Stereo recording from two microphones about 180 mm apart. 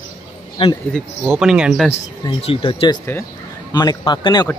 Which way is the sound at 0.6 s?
30° left (ahead or behind).